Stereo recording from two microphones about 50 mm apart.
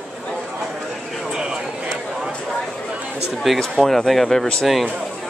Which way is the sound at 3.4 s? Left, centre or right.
Centre.